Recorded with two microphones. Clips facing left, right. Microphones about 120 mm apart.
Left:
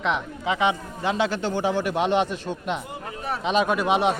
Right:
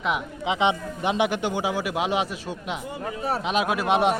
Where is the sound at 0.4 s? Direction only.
20° right (ahead or behind).